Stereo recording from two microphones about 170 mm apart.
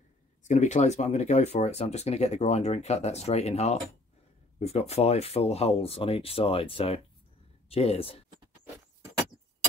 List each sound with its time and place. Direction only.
0.4 s speech: 45° left (ahead or behind)